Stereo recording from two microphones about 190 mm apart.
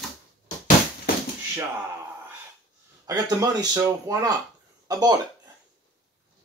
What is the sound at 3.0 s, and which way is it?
Speech, 20° right (ahead or behind).